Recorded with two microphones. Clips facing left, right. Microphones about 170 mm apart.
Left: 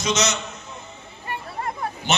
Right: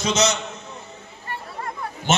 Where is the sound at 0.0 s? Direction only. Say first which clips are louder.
Right 2 dB; 30° right (ahead or behind).